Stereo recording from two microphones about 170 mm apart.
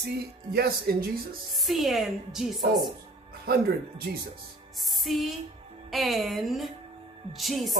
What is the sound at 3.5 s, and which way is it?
Speech, 65° right (ahead or behind).